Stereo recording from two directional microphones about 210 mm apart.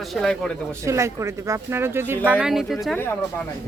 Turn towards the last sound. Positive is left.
turn(degrees=10)  # may be behind; listen again after turning